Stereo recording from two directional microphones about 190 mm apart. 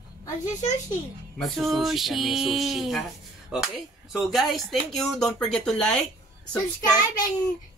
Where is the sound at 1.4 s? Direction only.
Centre (ahead or behind).